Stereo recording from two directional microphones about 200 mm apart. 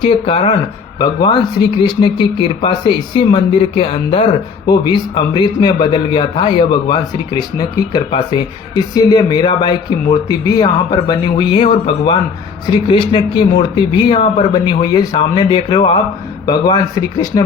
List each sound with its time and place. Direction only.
0.3 s a man's voice: 30° left (ahead or behind)